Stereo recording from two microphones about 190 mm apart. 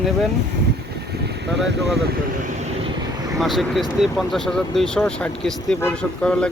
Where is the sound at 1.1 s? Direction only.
60° right (ahead or behind).